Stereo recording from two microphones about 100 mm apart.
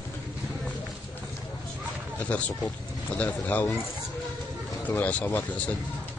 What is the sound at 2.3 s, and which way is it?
Speech, 15° left (ahead or behind).